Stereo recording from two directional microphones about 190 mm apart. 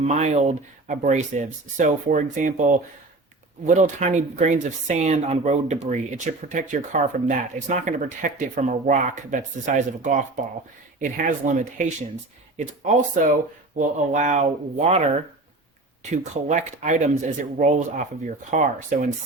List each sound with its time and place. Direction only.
0.0 s speech: 35° right (ahead or behind)
16.1 s speech: 40° right (ahead or behind)